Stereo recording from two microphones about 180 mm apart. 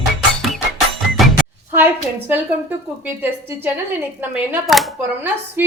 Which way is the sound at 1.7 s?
10° right (ahead or behind).